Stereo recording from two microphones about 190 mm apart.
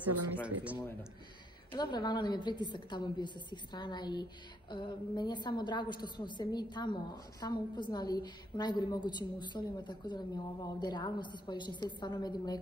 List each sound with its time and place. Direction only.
0.4 s speech: 5° right (ahead or behind)
1.7 s a woman's voice: 25° left (ahead or behind)